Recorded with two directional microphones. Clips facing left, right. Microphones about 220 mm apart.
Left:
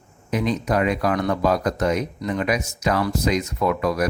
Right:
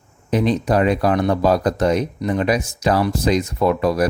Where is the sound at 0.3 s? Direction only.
30° right (ahead or behind).